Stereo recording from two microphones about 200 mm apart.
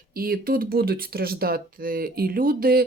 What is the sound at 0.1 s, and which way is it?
Speech, 50° right (ahead or behind).